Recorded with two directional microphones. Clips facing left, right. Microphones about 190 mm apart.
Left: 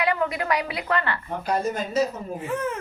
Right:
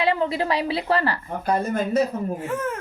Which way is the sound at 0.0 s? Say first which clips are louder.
Right 3 dB; 30° right (ahead or behind).